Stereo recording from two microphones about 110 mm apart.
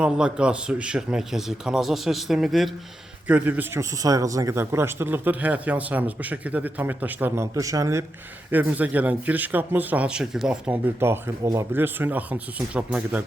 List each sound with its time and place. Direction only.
0.0 s a man's voice: 10° right (ahead or behind)
3.2 s speech: 15° right (ahead or behind)
7.5 s a man's voice: 30° right (ahead or behind)
8.4 s speech: 15° right (ahead or behind)